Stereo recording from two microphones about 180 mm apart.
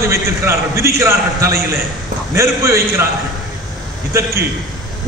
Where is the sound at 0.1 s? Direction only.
15° right (ahead or behind).